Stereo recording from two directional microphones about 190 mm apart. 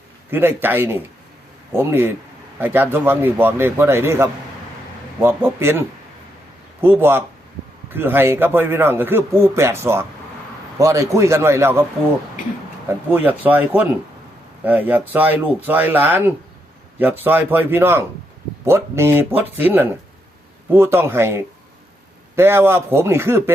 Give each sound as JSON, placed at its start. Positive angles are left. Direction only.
{"t": 0.3, "sound": "speech", "side_deg": -10}
{"t": 6.8, "sound": "speech", "side_deg": -10}
{"t": 13.1, "sound": "speech", "side_deg": -10}